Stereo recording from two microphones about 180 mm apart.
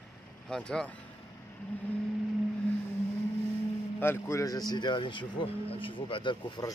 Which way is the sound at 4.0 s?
15° left (ahead or behind).